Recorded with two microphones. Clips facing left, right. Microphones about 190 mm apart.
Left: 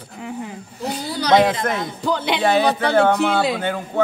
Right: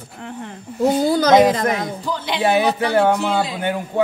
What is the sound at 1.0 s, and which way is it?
Speech, 45° right (ahead or behind).